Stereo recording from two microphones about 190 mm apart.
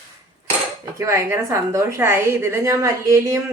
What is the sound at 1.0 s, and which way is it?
A woman's voice, 15° right (ahead or behind).